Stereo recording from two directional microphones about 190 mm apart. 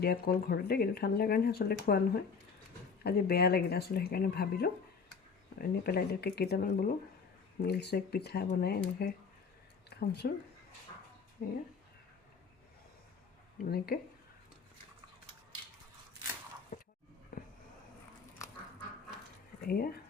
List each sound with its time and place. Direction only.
0.0 s speech: 55° left (ahead or behind)
11.4 s speech: 50° left (ahead or behind)
13.7 s speech: 55° left (ahead or behind)
19.6 s speech: 50° left (ahead or behind)